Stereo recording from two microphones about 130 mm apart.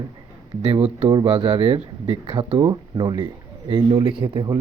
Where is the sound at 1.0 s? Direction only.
35° right (ahead or behind).